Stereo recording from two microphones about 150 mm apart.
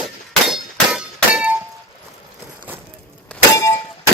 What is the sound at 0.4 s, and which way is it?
Clang, 5° right (ahead or behind).